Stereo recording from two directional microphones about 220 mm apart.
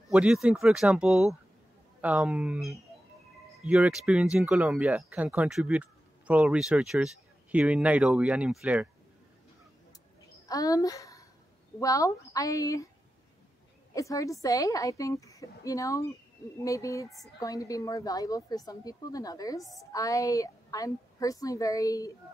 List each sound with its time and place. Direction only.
0.1 s speech: centre (ahead or behind)
10.5 s a woman's voice: 15° left (ahead or behind)
13.9 s a woman's voice: 15° left (ahead or behind)
19.6 s speech: centre (ahead or behind)
19.9 s a woman's voice: 15° left (ahead or behind)